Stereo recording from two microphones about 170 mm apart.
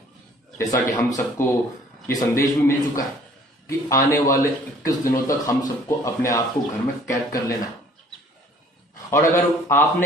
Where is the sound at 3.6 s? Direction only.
15° left (ahead or behind).